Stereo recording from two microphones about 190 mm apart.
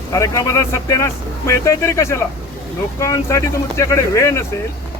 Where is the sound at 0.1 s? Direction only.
15° left (ahead or behind).